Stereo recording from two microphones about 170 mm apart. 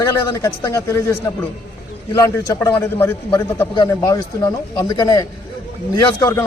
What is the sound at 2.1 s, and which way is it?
A man's voice, 20° left (ahead or behind).